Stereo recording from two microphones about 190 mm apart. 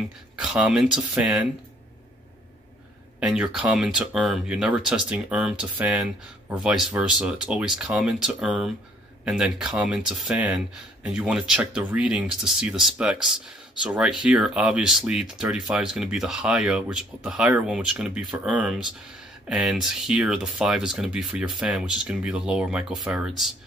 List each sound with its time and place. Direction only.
0.4 s speech: 5° right (ahead or behind)
3.2 s speech: 5° right (ahead or behind)